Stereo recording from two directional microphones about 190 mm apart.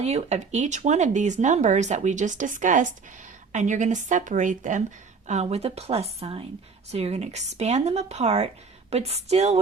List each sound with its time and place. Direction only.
0.0 s speech: 35° right (ahead or behind)